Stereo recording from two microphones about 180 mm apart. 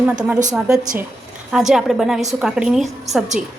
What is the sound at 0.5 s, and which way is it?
A woman's voice, 5° right (ahead or behind).